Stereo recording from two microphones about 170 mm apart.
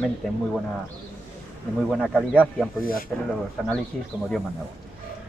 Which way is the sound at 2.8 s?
60° left (ahead or behind).